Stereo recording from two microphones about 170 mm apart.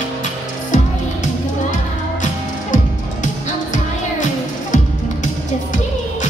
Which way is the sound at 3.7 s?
50° left (ahead or behind).